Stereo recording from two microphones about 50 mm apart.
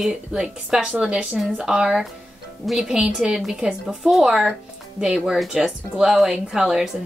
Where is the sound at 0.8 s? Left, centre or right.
Right.